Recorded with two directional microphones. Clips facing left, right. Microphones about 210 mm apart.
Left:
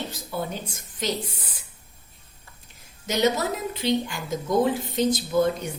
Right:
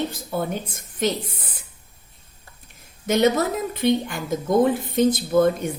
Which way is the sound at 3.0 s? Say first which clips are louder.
Right 4 dB; 55° right (ahead or behind).